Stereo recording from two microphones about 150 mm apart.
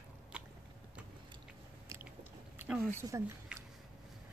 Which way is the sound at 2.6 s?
5° right (ahead or behind).